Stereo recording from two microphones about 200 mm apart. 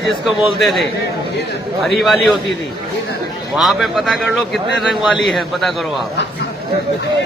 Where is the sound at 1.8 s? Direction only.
Centre (ahead or behind).